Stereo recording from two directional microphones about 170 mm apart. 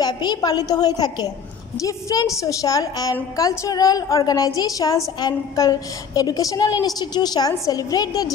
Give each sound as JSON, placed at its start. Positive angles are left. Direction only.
{"t": 0.0, "sound": "a woman's voice", "side_deg": 25}